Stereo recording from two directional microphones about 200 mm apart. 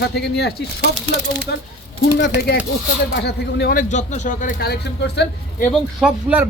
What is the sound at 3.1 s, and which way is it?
Speech, 55° left (ahead or behind).